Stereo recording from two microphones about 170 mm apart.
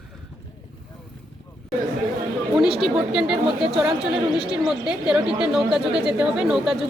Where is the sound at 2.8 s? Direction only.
5° right (ahead or behind).